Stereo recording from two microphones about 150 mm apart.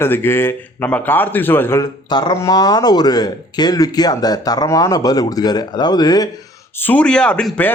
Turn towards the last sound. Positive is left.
turn(degrees=10)  # may be behind; listen again after turning